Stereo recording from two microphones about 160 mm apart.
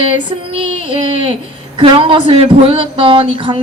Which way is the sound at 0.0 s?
30° right (ahead or behind).